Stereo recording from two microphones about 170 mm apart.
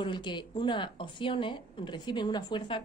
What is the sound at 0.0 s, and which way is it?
A woman's voice, 25° left (ahead or behind).